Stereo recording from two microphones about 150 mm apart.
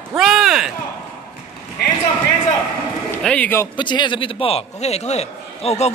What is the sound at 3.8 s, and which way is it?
A man's voice, 30° left (ahead or behind).